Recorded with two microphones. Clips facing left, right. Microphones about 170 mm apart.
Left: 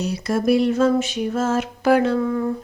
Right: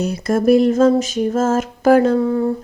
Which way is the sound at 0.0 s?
50° right (ahead or behind).